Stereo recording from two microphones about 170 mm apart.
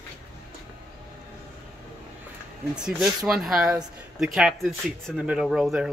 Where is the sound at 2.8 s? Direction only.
5° right (ahead or behind).